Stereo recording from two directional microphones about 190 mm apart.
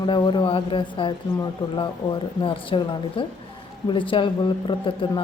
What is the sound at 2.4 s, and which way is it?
A woman's voice, 25° left (ahead or behind).